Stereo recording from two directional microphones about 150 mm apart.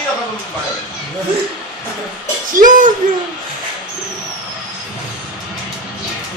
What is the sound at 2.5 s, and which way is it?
Speech, 60° right (ahead or behind).